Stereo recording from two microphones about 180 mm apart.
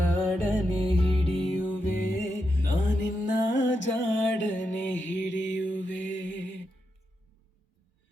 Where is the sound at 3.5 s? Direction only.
90° left.